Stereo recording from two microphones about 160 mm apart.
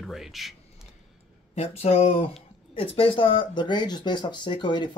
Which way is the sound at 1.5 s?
40° left (ahead or behind).